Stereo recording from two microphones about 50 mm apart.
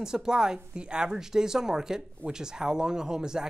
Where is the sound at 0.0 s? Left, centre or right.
Centre.